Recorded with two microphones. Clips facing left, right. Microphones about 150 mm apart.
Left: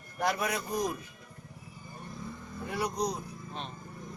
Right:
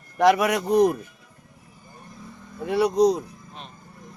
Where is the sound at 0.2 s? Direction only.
90° right; by 0.9 s 65° right (ahead or behind).